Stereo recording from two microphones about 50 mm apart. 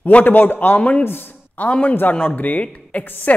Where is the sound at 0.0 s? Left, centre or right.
Left.